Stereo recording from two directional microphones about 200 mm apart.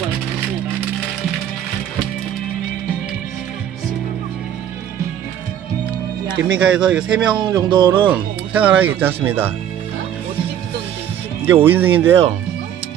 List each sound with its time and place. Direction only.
6.3 s speech: 5° right (ahead or behind)
7.3 s music: 20° right (ahead or behind)
8.1 s speech: 5° right (ahead or behind)
11.4 s speech: 10° right (ahead or behind)